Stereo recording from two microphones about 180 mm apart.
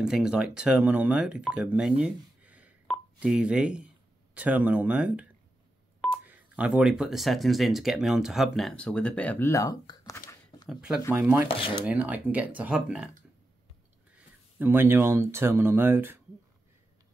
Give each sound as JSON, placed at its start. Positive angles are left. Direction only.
{"t": 0.0, "sound": "speech", "side_deg": -5}
{"t": 6.2, "sound": "speech", "side_deg": -5}
{"t": 10.7, "sound": "speech", "side_deg": -5}
{"t": 11.4, "sound": "speech", "side_deg": 30}
{"t": 11.8, "sound": "speech", "side_deg": -10}
{"t": 14.1, "sound": "speech", "side_deg": -10}